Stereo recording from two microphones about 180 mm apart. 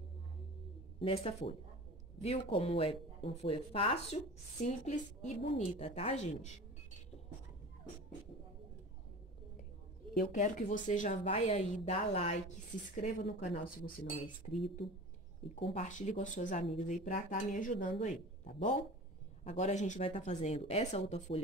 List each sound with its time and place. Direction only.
0.9 s a woman's voice: 30° left (ahead or behind)
10.1 s a woman's voice: 45° left (ahead or behind)
13.6 s speech: 50° left (ahead or behind)
14.4 s a woman's voice: 35° left (ahead or behind)
15.6 s a woman's voice: 35° left (ahead or behind)